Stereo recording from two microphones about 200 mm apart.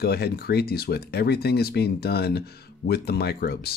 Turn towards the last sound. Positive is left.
turn(degrees=50)  # may be behind; listen again after turning